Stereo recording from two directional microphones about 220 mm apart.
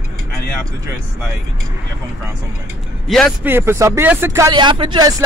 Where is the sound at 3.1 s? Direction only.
Centre (ahead or behind).